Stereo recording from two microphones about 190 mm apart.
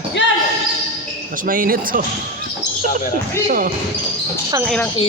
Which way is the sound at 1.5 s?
45° right (ahead or behind).